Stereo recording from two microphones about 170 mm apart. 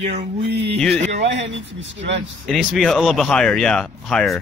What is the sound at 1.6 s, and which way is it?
Speech, 90° right.